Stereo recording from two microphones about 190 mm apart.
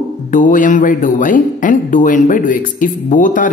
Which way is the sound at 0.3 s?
45° left (ahead or behind).